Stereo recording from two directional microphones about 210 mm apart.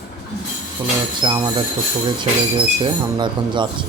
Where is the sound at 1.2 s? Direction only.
20° right (ahead or behind).